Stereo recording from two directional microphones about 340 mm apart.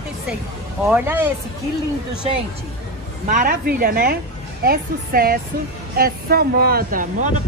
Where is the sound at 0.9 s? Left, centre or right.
Centre.